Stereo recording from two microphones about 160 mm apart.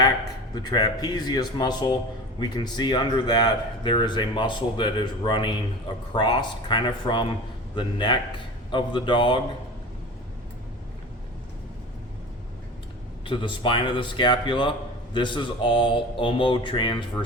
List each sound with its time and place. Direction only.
0.5 s speech: 25° left (ahead or behind)
13.2 s a man's voice: 30° left (ahead or behind)